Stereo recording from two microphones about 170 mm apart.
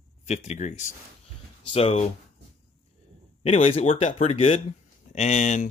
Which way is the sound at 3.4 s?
35° left (ahead or behind).